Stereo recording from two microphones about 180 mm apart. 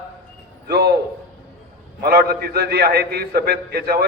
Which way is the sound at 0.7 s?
60° right (ahead or behind).